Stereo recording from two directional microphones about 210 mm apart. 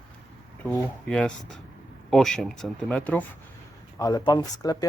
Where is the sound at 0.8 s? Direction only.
5° left (ahead or behind).